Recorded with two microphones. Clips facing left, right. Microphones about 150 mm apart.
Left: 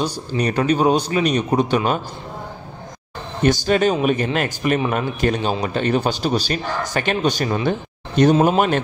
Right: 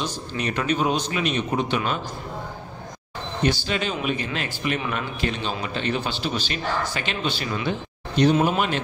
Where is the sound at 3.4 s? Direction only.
45° left (ahead or behind).